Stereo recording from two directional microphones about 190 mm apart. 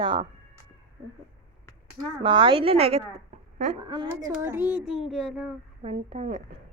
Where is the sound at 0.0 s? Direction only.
25° right (ahead or behind).